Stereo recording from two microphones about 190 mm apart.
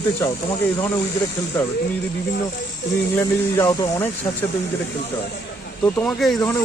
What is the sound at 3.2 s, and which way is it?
Speech, 15° left (ahead or behind).